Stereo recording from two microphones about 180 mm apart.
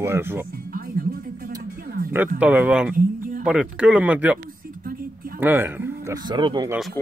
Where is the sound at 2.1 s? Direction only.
10° right (ahead or behind).